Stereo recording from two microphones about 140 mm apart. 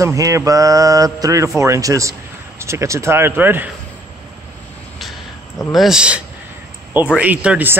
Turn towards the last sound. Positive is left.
turn(degrees=-10)  # may be behind; listen again after turning